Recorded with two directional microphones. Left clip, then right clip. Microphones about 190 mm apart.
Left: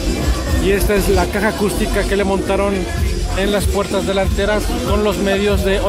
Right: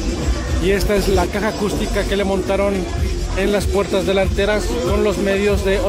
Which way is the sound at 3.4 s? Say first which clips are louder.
Even; 15° right (ahead or behind).